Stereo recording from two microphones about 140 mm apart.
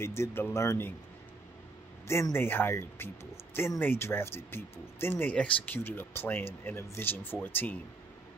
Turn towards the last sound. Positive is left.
turn(degrees=15)  # may be behind; listen again after turning